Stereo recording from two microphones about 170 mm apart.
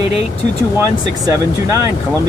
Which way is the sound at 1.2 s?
20° right (ahead or behind).